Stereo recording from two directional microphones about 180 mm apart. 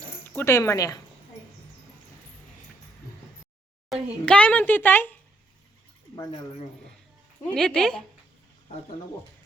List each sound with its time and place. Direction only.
0.3 s a woman's voice: 15° left (ahead or behind)
3.9 s a child's voice: centre (ahead or behind)
7.4 s speech: 5° left (ahead or behind)